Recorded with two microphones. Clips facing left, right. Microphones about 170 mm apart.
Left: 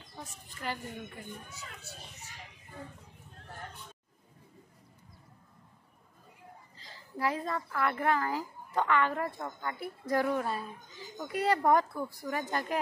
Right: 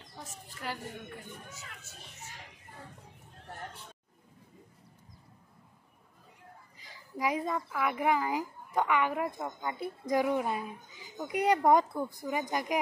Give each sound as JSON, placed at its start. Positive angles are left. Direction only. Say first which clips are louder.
{"t": 0.6, "sound": "speech", "louder": "left 1 dB", "side_deg": -5}
{"t": 1.5, "sound": "speech", "louder": "left 2 dB", "side_deg": 35}
{"t": 6.8, "sound": "a woman's voice", "louder": "even", "side_deg": -15}